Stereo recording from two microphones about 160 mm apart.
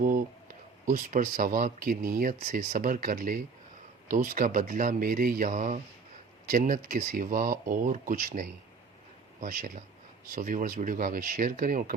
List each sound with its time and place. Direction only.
0.9 s speech: 55° right (ahead or behind)